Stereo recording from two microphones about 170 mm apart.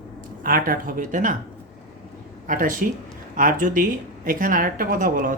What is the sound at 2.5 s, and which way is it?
Speech, 50° right (ahead or behind).